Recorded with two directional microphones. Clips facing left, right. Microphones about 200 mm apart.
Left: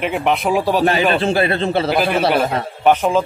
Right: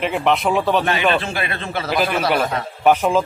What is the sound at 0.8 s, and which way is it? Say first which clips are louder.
A man's voice: left 4 dB; 35° left (ahead or behind).